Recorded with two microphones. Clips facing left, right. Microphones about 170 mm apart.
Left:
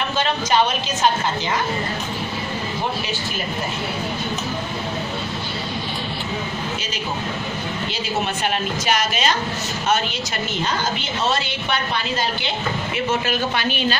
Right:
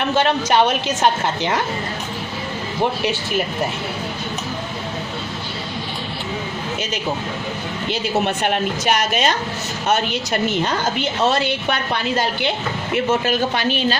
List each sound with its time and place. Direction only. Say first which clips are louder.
0.1 s a woman's voice: right 4 dB; 65° right (ahead or behind)
8.5 s a woman's voice: right 3 dB; 55° right (ahead or behind)
13.2 s a woman's voice: right 3 dB; 40° right (ahead or behind)